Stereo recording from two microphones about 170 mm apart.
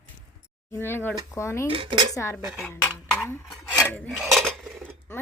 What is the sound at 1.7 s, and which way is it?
Speech, 30° right (ahead or behind).